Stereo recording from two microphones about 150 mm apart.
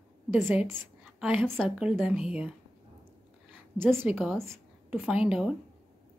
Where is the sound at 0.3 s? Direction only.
10° right (ahead or behind).